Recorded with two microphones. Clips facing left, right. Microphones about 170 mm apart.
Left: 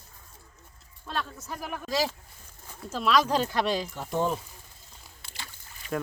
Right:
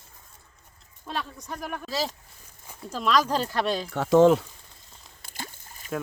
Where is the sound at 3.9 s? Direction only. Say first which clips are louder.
Right 11 dB; 80° right.